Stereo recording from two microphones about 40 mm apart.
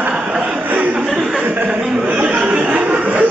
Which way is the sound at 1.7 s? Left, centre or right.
Right.